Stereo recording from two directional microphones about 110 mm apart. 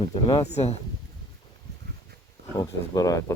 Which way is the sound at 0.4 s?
75° left (ahead or behind).